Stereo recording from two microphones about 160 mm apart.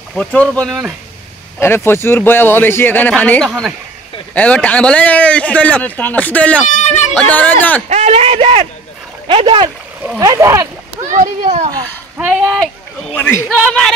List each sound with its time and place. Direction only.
0.1 s speech: 5° left (ahead or behind)
1.6 s a man's voice: 15° left (ahead or behind)
6.7 s a sound: 45° left (ahead or behind)
7.2 s a man's voice: 10° left (ahead or behind)
7.9 s a man's voice: 40° right (ahead or behind)
10.2 s speech: 20° right (ahead or behind)
11.1 s speech: 50° right (ahead or behind)
12.2 s speech: 10° right (ahead or behind)
13.1 s a man's voice: 15° left (ahead or behind)